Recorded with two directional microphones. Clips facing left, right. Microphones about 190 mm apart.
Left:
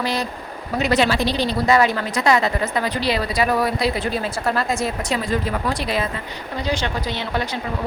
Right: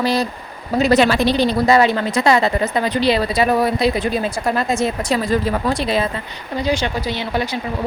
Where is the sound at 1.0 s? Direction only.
55° right (ahead or behind).